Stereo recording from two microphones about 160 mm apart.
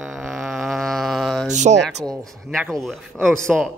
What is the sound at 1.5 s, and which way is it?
Speech, 45° right (ahead or behind).